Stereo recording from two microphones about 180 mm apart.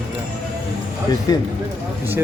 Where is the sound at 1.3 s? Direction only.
20° left (ahead or behind).